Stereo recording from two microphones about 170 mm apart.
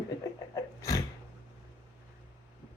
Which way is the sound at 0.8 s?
20° left (ahead or behind).